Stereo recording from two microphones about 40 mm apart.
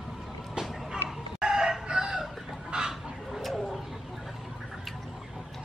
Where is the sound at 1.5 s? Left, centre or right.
Centre.